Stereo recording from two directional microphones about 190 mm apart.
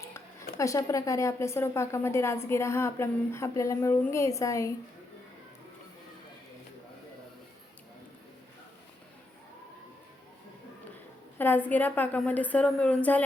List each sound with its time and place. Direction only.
0.5 s a woman's voice: 15° left (ahead or behind)
11.3 s a woman's voice: 10° left (ahead or behind)